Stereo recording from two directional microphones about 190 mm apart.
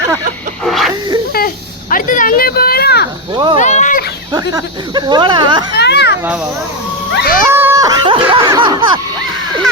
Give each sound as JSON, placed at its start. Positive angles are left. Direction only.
{"t": 0.6, "sound": "wheeze", "side_deg": 0}
{"t": 1.9, "sound": "a sound", "side_deg": 45}
{"t": 3.3, "sound": "speech", "side_deg": -25}
{"t": 3.6, "sound": "a sound", "side_deg": 40}
{"t": 4.3, "sound": "speech", "side_deg": -20}
{"t": 5.7, "sound": "children playing", "side_deg": 60}
{"t": 7.1, "sound": "speech", "side_deg": 60}
{"t": 7.4, "sound": "speech", "side_deg": -15}